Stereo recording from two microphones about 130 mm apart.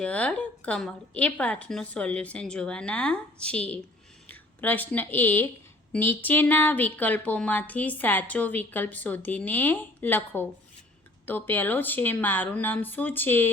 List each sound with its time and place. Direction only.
0.0 s a woman's voice: 10° left (ahead or behind)